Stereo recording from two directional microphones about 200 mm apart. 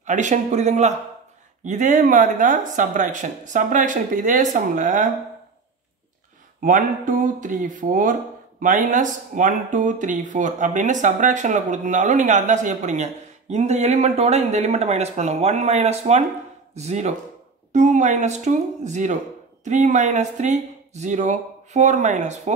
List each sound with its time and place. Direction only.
0.0 s speech: 35° right (ahead or behind)
6.6 s speech: 40° right (ahead or behind)